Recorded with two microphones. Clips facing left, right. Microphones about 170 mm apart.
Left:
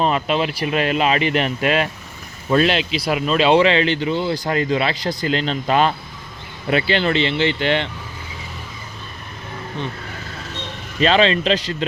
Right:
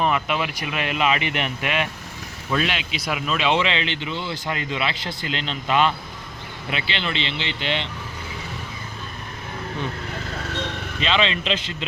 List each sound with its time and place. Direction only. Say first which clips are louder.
0.0 s speech: left 4 dB; 30° left (ahead or behind); by 7.9 s 55° left (ahead or behind)
11.0 s speech: left 7 dB; 45° left (ahead or behind)